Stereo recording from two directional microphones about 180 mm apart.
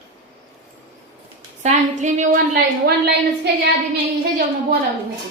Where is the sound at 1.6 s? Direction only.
40° right (ahead or behind).